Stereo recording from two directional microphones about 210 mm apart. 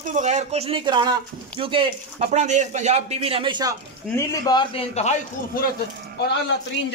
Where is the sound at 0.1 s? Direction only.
35° right (ahead or behind).